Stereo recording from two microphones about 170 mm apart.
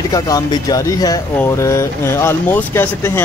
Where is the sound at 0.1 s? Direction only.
20° left (ahead or behind).